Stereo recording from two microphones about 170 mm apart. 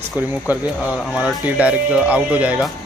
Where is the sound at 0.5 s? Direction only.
10° right (ahead or behind).